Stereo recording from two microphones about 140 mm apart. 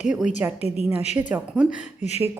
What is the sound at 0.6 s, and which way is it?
Speech, 45° left (ahead or behind).